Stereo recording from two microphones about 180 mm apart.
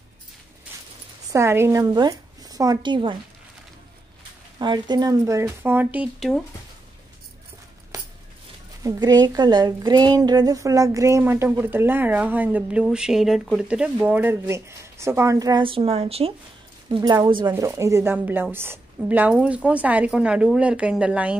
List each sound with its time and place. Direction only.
1.3 s a woman's voice: 15° right (ahead or behind)
4.6 s a woman's voice: 25° right (ahead or behind); by 6.4 s centre (ahead or behind)
7.9 s a sound: 20° right (ahead or behind)
8.8 s a woman's voice: 20° right (ahead or behind)
17.5 s a woman's voice: 15° right (ahead or behind)